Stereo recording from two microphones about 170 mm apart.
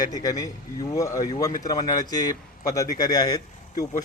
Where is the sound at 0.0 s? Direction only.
20° left (ahead or behind).